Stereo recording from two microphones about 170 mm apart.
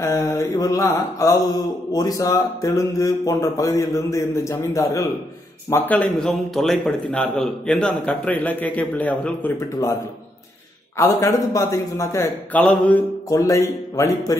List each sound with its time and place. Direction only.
0.0 s mantra: 15° left (ahead or behind)
5.7 s a man's voice: 10° left (ahead or behind)
11.0 s a man's voice: 15° left (ahead or behind)
12.6 s mantra: 5° left (ahead or behind)
13.3 s mantra: 20° left (ahead or behind)